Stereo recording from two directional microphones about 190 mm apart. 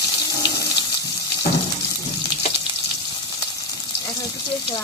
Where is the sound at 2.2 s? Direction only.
25° left (ahead or behind).